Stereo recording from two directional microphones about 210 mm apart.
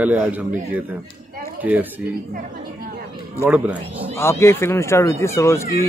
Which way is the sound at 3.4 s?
5° right (ahead or behind).